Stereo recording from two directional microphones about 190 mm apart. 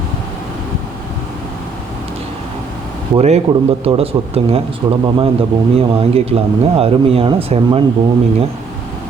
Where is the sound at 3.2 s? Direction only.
35° right (ahead or behind).